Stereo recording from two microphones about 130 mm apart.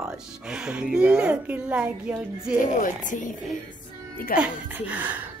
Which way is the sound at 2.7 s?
85° left.